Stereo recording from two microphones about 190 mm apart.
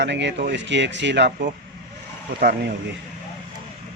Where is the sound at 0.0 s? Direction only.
65° right (ahead or behind).